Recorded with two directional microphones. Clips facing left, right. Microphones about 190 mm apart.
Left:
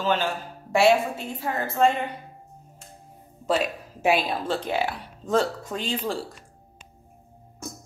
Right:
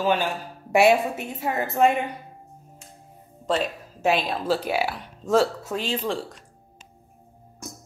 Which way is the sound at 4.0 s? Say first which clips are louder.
Even; 10° left (ahead or behind).